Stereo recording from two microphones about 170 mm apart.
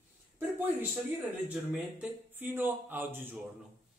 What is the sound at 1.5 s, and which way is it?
A man's voice, 10° right (ahead or behind).